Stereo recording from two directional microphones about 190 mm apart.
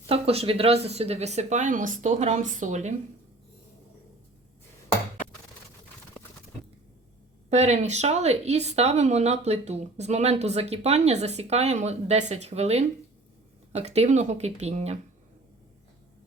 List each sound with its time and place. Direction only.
0.1 s speech: 30° right (ahead or behind)
7.5 s speech: 35° right (ahead or behind)